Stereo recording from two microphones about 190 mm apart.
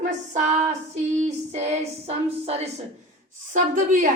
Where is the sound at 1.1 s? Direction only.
35° right (ahead or behind).